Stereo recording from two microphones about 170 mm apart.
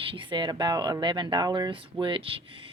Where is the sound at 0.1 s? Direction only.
30° right (ahead or behind).